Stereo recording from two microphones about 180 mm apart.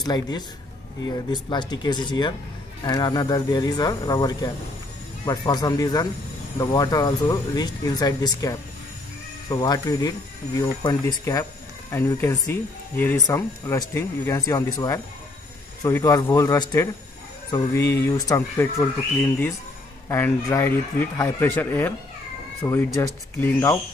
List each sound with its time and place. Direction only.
0.0 s speech: 20° left (ahead or behind)
15.8 s speech: 20° left (ahead or behind)